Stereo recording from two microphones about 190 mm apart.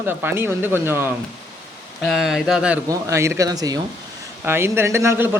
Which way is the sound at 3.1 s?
15° right (ahead or behind).